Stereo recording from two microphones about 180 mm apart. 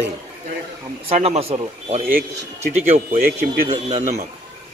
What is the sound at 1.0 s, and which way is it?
Speech, 35° right (ahead or behind).